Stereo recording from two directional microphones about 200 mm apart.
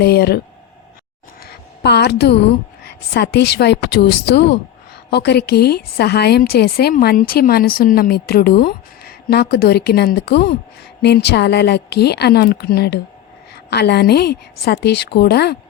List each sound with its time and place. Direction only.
0.0 s a woman's voice: 50° left (ahead or behind)
1.5 s a sound: 55° left (ahead or behind)
2.8 s a woman's voice: 55° left (ahead or behind)